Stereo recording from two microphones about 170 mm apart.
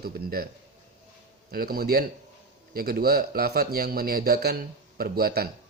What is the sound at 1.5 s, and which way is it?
Speech, 60° right (ahead or behind).